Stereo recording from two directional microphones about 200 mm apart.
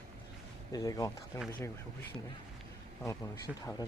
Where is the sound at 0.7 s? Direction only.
20° left (ahead or behind).